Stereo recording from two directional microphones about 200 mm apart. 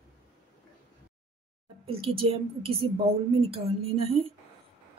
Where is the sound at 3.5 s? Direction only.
30° right (ahead or behind).